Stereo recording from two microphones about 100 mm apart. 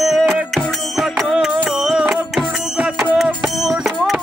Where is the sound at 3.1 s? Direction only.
5° right (ahead or behind).